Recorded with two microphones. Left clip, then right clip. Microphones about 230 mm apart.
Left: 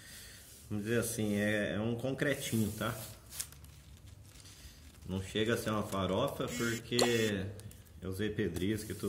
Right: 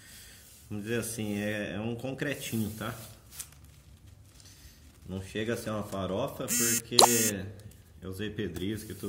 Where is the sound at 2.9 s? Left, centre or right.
Centre.